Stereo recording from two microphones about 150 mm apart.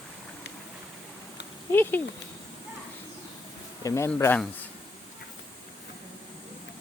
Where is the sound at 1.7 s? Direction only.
15° left (ahead or behind).